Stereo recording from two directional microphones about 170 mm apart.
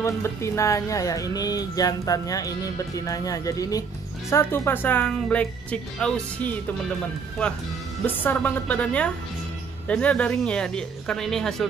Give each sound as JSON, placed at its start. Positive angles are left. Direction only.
{"t": 0.0, "sound": "speech", "side_deg": 15}
{"t": 8.1, "sound": "speech", "side_deg": 10}